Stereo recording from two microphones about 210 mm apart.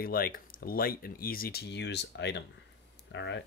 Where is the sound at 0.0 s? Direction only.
45° left (ahead or behind).